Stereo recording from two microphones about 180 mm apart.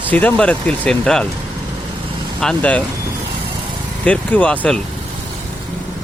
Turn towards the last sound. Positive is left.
turn(degrees=5)  # may be behind; listen again after turning